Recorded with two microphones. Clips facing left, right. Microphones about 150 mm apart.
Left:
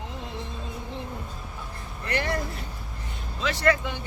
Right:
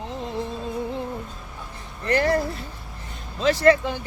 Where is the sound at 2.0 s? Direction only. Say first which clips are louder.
Right 8 dB; 35° right (ahead or behind).